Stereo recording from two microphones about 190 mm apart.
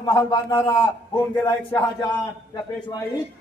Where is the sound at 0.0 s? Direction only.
20° left (ahead or behind).